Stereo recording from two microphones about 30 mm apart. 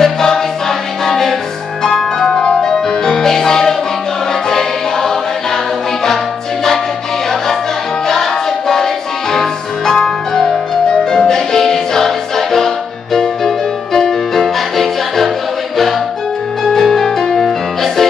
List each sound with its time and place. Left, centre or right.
0.0 s music: centre
2.3 s music: left
2.6 s music: centre
8.1 s music: centre
16.6 s music: centre